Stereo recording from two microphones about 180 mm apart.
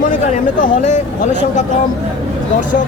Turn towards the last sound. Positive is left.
turn(degrees=45)  # may be behind; listen again after turning